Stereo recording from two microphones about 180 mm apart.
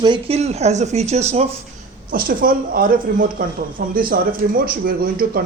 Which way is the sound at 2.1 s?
50° right (ahead or behind).